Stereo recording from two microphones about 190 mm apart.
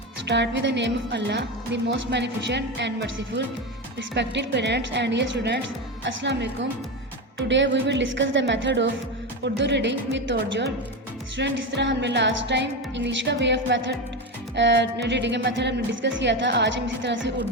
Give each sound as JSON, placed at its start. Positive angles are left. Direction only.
{"t": 0.3, "sound": "a woman's voice", "side_deg": -65}